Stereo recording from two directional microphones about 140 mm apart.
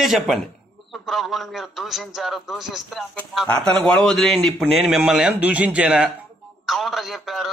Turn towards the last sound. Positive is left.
turn(degrees=0)  # may be behind; listen again after turning